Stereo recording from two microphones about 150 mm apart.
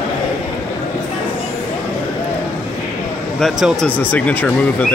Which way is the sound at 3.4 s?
Centre (ahead or behind).